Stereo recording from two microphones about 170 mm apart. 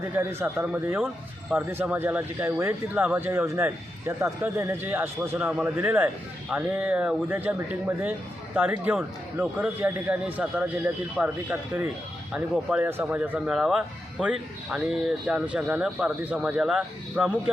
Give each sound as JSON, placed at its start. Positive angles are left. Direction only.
{"t": 0.0, "sound": "a man's voice", "side_deg": -15}